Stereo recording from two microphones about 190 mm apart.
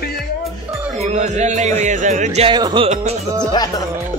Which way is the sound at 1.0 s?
35° right (ahead or behind).